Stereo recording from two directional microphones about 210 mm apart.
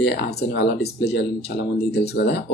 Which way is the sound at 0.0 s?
55° left (ahead or behind).